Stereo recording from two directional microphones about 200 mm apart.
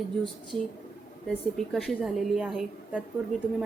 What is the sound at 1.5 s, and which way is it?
A woman's voice, centre (ahead or behind).